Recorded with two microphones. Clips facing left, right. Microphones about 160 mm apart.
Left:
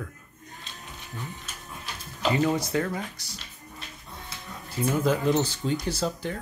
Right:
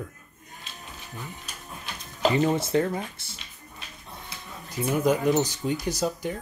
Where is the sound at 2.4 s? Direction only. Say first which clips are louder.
Right 1 dB; 25° right (ahead or behind).